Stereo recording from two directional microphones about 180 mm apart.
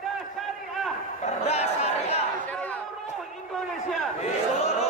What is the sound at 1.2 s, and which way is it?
Crowd, 35° left (ahead or behind).